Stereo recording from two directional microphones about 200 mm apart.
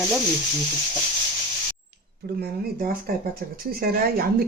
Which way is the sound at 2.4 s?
50° right (ahead or behind).